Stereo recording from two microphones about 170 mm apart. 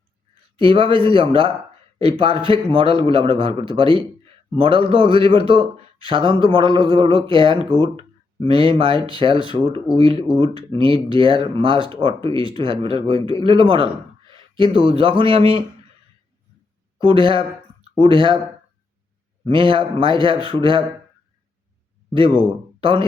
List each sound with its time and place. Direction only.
0.5 s a man's voice: 30° right (ahead or behind)
17.2 s a man's voice: 30° right (ahead or behind)
19.5 s speech: 30° right (ahead or behind)
22.8 s speech: 30° right (ahead or behind)